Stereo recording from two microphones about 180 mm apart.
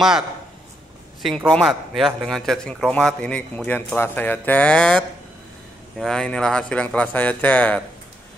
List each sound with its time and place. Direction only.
1.2 s a man's voice: centre (ahead or behind)